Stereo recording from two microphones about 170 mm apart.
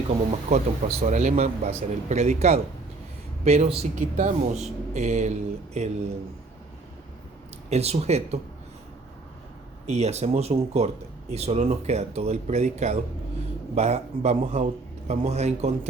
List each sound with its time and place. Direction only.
0.3 s a man's voice: 40° right (ahead or behind)
7.7 s a man's voice: 40° right (ahead or behind)
9.8 s a man's voice: 40° right (ahead or behind)